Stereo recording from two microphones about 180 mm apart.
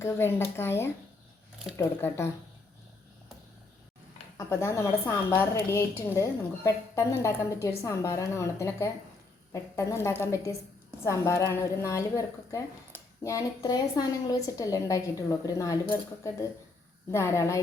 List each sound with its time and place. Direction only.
0.0 s a woman's voice: 15° left (ahead or behind)
4.4 s a woman's voice: 15° left (ahead or behind)